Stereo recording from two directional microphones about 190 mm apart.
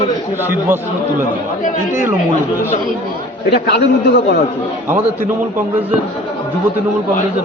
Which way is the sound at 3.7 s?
60° left (ahead or behind).